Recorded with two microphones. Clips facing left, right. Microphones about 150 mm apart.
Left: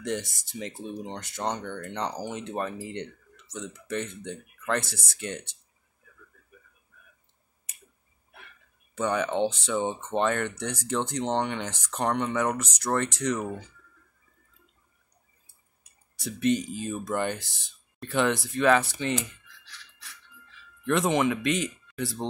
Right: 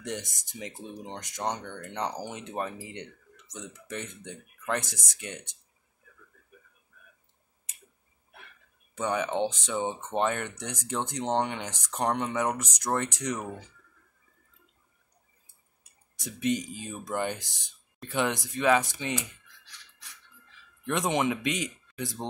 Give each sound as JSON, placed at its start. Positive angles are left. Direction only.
{"t": 0.0, "sound": "speech", "side_deg": -15}
{"t": 8.9, "sound": "speech", "side_deg": -15}
{"t": 16.2, "sound": "speech", "side_deg": -15}
{"t": 19.2, "sound": "a sound", "side_deg": -15}
{"t": 20.8, "sound": "speech", "side_deg": -15}